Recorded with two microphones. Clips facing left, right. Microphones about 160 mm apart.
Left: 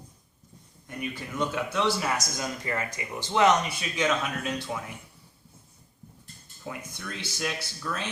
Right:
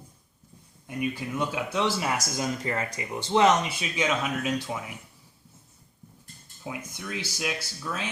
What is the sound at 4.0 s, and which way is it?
Speech, 10° right (ahead or behind).